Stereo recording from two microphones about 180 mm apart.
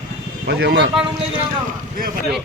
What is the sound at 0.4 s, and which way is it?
Speech, 65° right (ahead or behind).